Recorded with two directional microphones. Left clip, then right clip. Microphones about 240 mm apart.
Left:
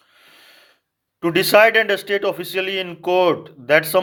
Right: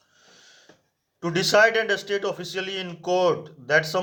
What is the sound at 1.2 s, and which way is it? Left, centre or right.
Speech, left.